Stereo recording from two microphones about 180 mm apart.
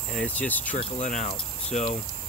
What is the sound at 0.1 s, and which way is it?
Speech, 5° left (ahead or behind).